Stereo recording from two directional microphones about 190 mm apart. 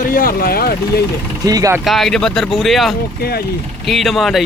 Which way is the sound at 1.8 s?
Centre (ahead or behind).